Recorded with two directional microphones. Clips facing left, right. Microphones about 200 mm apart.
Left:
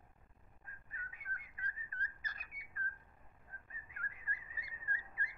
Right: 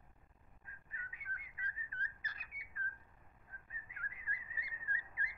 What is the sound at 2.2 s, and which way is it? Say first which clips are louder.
Bird: left 1 dB; 45° left (ahead or behind).